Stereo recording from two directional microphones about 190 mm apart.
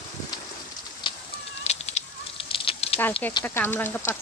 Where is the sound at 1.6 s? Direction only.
35° left (ahead or behind).